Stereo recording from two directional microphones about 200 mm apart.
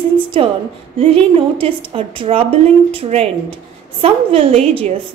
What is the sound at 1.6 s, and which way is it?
A woman's voice, 25° right (ahead or behind).